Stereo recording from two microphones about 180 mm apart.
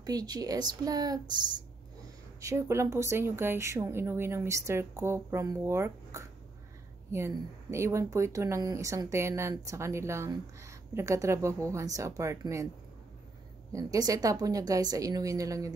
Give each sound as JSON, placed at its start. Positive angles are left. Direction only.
{"t": 0.0, "sound": "a woman's voice", "side_deg": -20}
{"t": 2.4, "sound": "a woman's voice", "side_deg": -15}
{"t": 13.7, "sound": "a woman's voice", "side_deg": -20}